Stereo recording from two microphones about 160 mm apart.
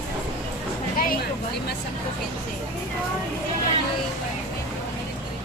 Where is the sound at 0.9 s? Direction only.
65° left (ahead or behind).